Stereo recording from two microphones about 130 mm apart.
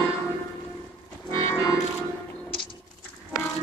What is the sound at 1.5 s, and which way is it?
Music, 25° left (ahead or behind).